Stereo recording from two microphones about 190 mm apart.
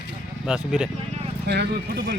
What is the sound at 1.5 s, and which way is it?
Speech, 55° right (ahead or behind).